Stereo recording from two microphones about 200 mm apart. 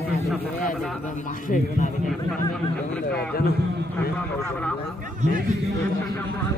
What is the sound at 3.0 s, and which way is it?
Speech, 50° left (ahead or behind).